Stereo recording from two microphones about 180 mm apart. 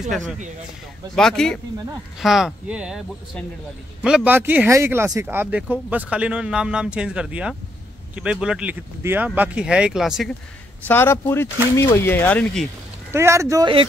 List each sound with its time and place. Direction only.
1.1 s speech: 5° left (ahead or behind)
4.0 s speech: 5° right (ahead or behind)
10.9 s speech: 15° left (ahead or behind)
13.1 s speech: 15° right (ahead or behind)